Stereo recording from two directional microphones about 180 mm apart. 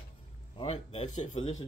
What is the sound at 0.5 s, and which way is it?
Speech, 30° left (ahead or behind).